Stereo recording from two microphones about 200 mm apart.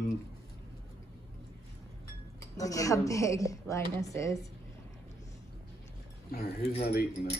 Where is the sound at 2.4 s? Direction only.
15° left (ahead or behind).